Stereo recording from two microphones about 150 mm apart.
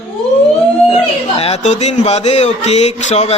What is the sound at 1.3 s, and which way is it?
Speech, 40° left (ahead or behind).